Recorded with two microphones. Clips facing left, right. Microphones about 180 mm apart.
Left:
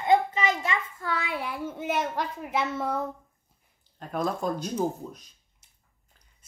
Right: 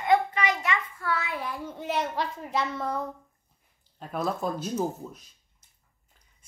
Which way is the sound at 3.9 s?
5° right (ahead or behind).